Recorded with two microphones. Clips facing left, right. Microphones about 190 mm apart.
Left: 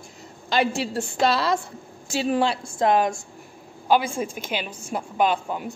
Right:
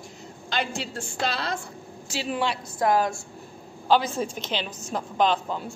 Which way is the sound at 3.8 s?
10° left (ahead or behind).